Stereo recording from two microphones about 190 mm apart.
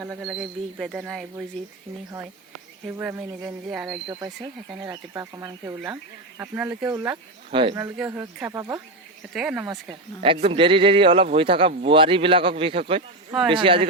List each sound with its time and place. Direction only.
0.0 s speech: 5° right (ahead or behind)
2.8 s speech: 5° right (ahead or behind)
4.9 s speech: 15° right (ahead or behind)
7.5 s a man's voice: 25° right (ahead or behind)
7.8 s speech: 10° right (ahead or behind)
9.3 s speech: 5° right (ahead or behind)
10.2 s a man's voice: 25° right (ahead or behind)